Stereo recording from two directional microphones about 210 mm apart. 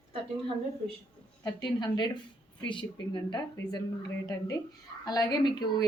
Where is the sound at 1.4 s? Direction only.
20° left (ahead or behind).